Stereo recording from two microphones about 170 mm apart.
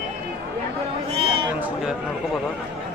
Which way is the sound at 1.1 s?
35° right (ahead or behind).